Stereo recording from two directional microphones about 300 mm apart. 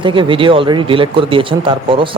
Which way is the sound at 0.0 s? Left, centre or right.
Centre.